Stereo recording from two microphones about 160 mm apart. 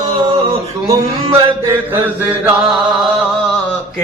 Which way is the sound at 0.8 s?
25° right (ahead or behind).